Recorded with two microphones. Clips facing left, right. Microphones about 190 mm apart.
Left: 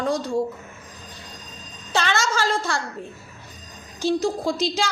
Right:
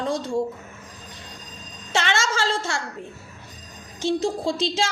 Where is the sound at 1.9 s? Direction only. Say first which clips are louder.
Left 1 dB; 25° right (ahead or behind).